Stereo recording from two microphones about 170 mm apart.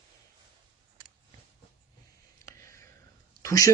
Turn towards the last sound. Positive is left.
turn(degrees=20)  # may be behind; listen again after turning